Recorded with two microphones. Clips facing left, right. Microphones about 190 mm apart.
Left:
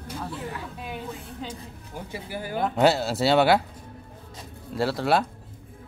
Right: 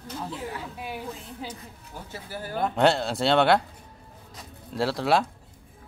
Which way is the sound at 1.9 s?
15° left (ahead or behind).